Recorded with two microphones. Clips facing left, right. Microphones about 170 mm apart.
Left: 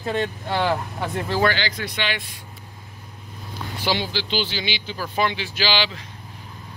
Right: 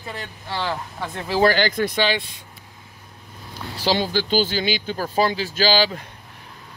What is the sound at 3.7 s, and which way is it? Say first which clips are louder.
Speech: right 4 dB; 40° right (ahead or behind).